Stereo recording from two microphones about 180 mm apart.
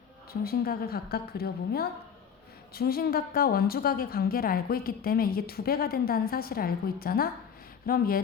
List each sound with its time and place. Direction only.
0.4 s a woman's voice: 60° left (ahead or behind)